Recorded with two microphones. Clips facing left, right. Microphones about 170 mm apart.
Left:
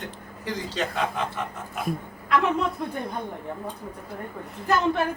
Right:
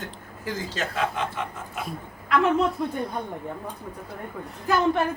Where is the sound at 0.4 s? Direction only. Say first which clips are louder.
Left 1 dB; 5° right (ahead or behind).